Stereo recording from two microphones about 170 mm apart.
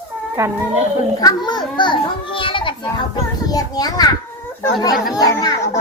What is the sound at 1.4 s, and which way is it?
A child's voice, 25° left (ahead or behind).